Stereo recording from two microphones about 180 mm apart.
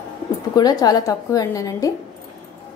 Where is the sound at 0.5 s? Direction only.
20° left (ahead or behind).